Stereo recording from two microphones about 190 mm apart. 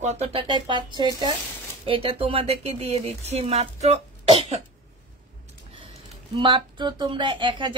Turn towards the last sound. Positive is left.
turn(degrees=-25)  # may be behind; listen again after turning